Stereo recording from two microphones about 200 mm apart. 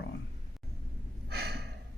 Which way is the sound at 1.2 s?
50° right (ahead or behind).